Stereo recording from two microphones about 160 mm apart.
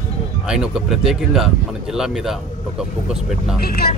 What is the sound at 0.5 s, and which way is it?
Speech, 5° right (ahead or behind).